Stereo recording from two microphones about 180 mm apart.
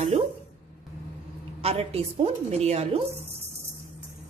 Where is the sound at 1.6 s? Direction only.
35° right (ahead or behind).